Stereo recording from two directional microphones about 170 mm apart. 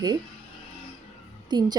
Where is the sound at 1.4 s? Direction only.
25° right (ahead or behind).